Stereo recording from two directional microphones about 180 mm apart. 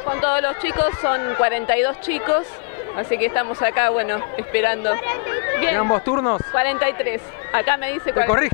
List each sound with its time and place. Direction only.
0.0 s speech: 20° left (ahead or behind)
6.6 s speech: 15° left (ahead or behind)